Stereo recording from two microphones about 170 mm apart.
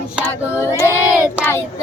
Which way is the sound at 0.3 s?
15° left (ahead or behind).